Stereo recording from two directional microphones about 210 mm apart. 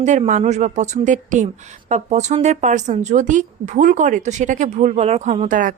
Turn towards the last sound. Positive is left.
turn(degrees=-35)  # may be behind; listen again after turning